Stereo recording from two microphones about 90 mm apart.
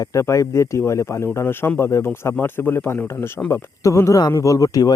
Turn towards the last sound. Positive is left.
turn(degrees=40)  # may be behind; listen again after turning